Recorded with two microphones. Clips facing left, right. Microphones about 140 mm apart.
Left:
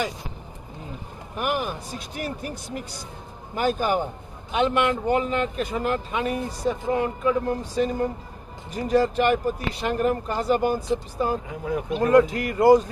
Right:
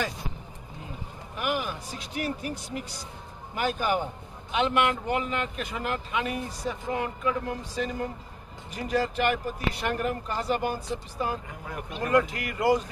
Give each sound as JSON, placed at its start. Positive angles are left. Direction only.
{"t": 1.4, "sound": "speech", "side_deg": 50}
{"t": 9.7, "sound": "speech", "side_deg": 25}
{"t": 10.0, "sound": "speech", "side_deg": 45}